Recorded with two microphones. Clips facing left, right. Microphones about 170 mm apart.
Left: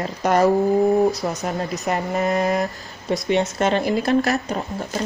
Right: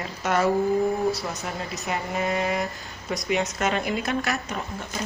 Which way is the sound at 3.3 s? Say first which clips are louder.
Left 5 dB; 30° left (ahead or behind).